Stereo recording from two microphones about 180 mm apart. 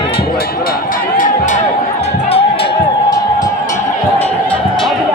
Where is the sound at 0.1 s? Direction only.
60° left (ahead or behind); by 3.5 s 25° left (ahead or behind).